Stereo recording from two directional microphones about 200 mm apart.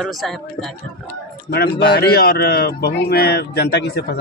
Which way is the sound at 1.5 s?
55° left (ahead or behind).